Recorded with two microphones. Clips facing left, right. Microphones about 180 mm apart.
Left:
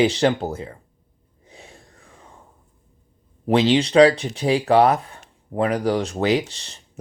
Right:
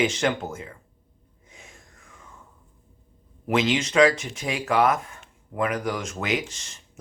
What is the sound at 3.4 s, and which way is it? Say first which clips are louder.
Speech: left 6 dB; 35° left (ahead or behind).